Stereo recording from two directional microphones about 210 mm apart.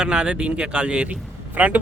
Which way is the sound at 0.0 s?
5° right (ahead or behind).